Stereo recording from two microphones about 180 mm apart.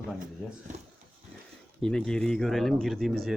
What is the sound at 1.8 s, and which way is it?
Speech, 5° left (ahead or behind).